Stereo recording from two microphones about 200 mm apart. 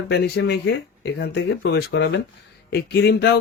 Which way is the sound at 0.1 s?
55° left (ahead or behind).